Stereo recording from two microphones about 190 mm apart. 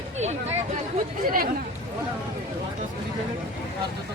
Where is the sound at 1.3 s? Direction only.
50° right (ahead or behind).